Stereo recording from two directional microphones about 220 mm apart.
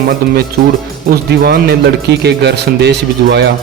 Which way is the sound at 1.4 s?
45° right (ahead or behind).